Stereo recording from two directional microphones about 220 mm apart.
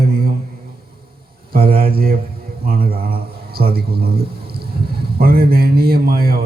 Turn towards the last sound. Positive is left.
turn(degrees=-45)  # may be behind; listen again after turning